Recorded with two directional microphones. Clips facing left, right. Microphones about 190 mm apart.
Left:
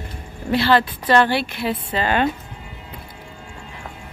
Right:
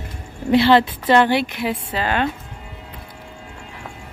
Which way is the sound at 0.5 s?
20° right (ahead or behind).